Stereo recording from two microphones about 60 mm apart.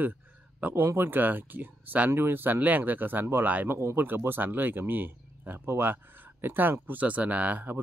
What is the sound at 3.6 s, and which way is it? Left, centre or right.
Speech, right.